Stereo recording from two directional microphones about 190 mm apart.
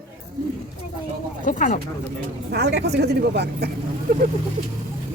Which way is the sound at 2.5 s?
60° right (ahead or behind).